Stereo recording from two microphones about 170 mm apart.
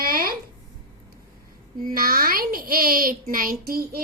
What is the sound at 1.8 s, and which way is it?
Speech, 60° right (ahead or behind).